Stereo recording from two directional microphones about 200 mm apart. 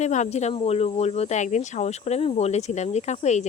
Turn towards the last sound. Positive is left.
turn(degrees=35)  # may be behind; listen again after turning